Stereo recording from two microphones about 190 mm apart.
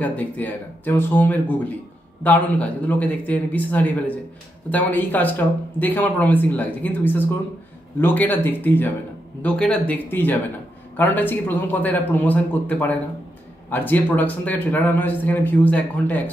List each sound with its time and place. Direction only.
0.0 s speech: 10° left (ahead or behind)